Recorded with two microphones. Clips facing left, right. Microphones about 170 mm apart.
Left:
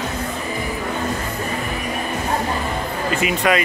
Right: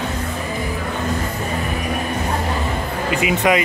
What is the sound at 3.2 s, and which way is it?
Speech, 20° right (ahead or behind).